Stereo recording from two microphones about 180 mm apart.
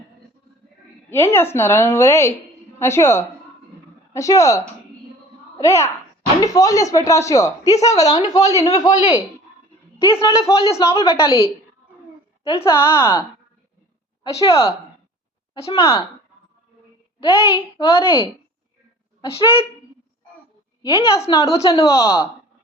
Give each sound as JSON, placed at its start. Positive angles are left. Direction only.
{"t": 1.1, "sound": "a woman's voice", "side_deg": 15}
{"t": 12.4, "sound": "a sound", "side_deg": 35}
{"t": 12.6, "sound": "a woman's voice", "side_deg": 15}
{"t": 14.3, "sound": "a woman's voice", "side_deg": 15}
{"t": 15.7, "sound": "a woman's voice", "side_deg": 20}
{"t": 17.2, "sound": "speech", "side_deg": 30}
{"t": 19.4, "sound": "a woman's voice", "side_deg": 30}
{"t": 20.8, "sound": "speech", "side_deg": 20}